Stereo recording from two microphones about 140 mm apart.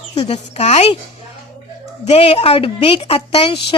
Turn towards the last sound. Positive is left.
turn(degrees=40)  # may be behind; listen again after turning